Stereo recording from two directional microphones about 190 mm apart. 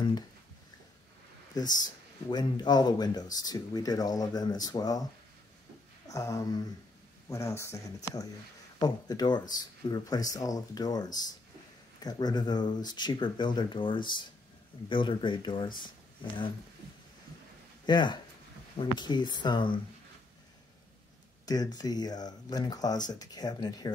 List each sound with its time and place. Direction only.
1.5 s speech: 20° left (ahead or behind)
6.0 s speech: 15° left (ahead or behind)
17.8 s speech: 25° left (ahead or behind)
21.5 s speech: 20° left (ahead or behind)